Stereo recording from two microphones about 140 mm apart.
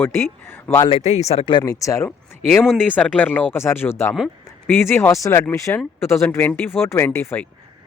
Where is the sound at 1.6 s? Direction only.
25° left (ahead or behind).